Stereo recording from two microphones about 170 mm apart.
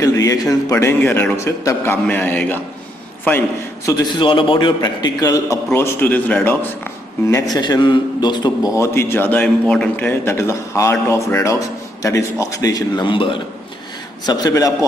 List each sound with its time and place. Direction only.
0.0 s a man's voice: 20° left (ahead or behind)
4.0 s a man's voice: 30° left (ahead or behind); by 6.5 s 10° left (ahead or behind)
7.5 s a man's voice: 25° left (ahead or behind)